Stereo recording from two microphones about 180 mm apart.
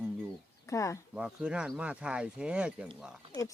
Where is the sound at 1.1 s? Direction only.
5° right (ahead or behind).